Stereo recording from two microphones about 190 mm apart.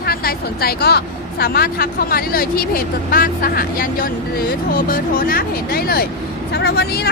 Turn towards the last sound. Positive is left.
turn(degrees=55)  # may be behind; listen again after turning